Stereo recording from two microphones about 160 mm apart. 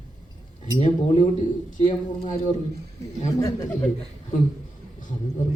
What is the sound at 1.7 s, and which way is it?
Speech, 55° left (ahead or behind).